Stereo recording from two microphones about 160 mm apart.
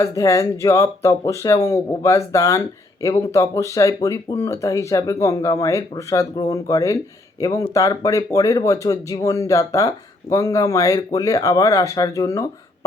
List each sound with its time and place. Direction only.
0.0 s speech: 20° left (ahead or behind)